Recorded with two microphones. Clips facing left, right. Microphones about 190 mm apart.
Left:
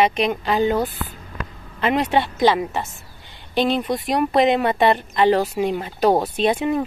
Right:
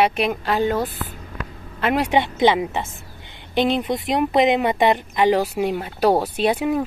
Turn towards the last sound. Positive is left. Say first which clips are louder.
# even
turn(degrees=-5)  # may be behind; listen again after turning